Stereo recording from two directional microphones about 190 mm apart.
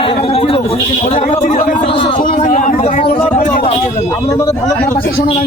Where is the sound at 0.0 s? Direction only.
30° left (ahead or behind).